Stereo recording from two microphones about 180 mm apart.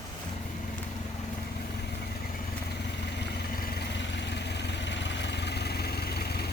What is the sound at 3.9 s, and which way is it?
Vehicle, 75° left (ahead or behind).